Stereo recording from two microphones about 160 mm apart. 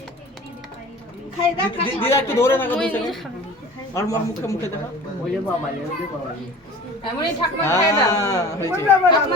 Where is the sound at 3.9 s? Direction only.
20° left (ahead or behind).